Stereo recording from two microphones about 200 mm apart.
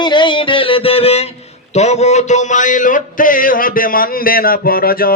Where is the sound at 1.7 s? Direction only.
35° left (ahead or behind).